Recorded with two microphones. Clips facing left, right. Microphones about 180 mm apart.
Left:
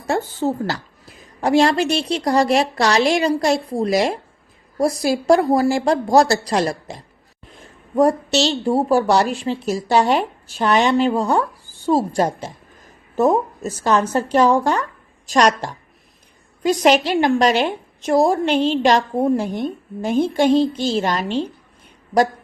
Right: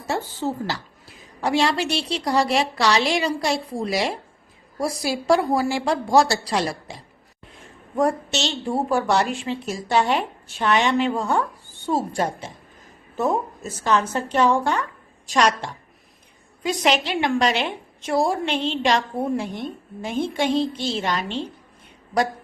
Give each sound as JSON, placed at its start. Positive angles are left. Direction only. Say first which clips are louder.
{"t": 0.1, "sound": "a woman's voice", "louder": "left 5 dB", "side_deg": 50}